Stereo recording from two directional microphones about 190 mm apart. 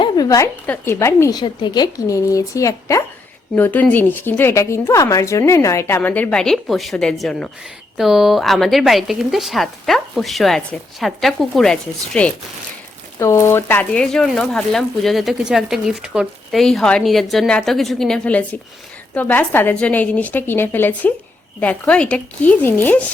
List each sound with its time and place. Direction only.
0.0 s a woman's voice: 20° left (ahead or behind); by 12.3 s 5° left (ahead or behind)
13.1 s a woman's voice: 15° left (ahead or behind)